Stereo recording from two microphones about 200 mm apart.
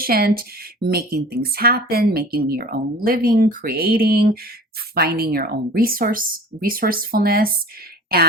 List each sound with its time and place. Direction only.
0.0 s speech: 50° right (ahead or behind)